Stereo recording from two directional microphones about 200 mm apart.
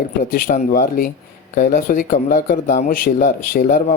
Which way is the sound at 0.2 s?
40° left (ahead or behind).